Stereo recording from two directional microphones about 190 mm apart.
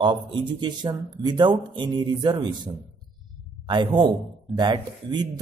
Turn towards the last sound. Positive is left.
turn(degrees=-25)  # may be behind; listen again after turning